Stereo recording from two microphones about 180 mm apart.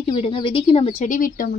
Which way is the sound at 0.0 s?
30° left (ahead or behind).